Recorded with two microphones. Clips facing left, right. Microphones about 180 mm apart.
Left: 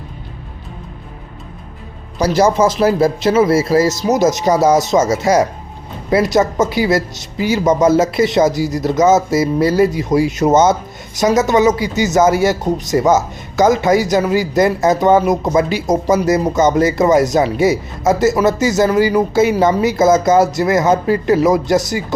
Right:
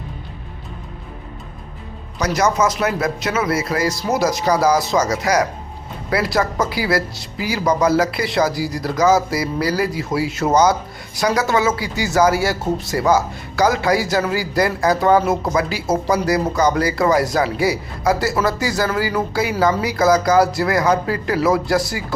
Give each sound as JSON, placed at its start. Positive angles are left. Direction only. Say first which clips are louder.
{"t": 2.1, "sound": "speech", "louder": "left 5 dB", "side_deg": 30}